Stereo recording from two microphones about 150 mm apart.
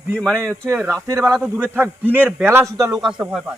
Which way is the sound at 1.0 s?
20° right (ahead or behind).